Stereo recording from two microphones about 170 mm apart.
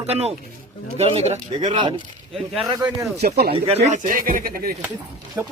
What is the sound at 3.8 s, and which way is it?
Speech, 45° right (ahead or behind).